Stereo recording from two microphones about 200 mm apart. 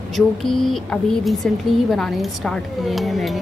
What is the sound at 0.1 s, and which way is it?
A woman's voice, centre (ahead or behind).